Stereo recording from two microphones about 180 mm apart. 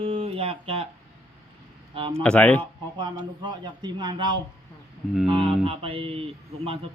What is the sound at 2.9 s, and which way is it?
Speech, 25° right (ahead or behind).